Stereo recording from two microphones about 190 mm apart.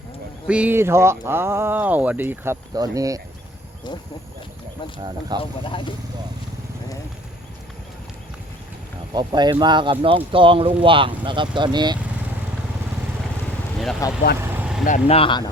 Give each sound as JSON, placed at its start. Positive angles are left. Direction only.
{"t": 0.4, "sound": "speech", "side_deg": -5}
{"t": 5.4, "sound": "speech", "side_deg": 25}
{"t": 9.1, "sound": "speech", "side_deg": -20}
{"t": 14.0, "sound": "speech", "side_deg": 15}
{"t": 14.3, "sound": "vehicle", "side_deg": -10}
{"t": 14.8, "sound": "speech", "side_deg": 35}